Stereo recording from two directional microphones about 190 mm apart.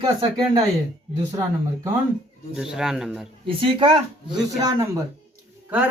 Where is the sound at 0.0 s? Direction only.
20° right (ahead or behind).